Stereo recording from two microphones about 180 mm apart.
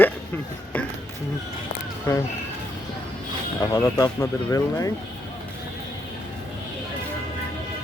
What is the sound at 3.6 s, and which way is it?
Speech, 15° left (ahead or behind).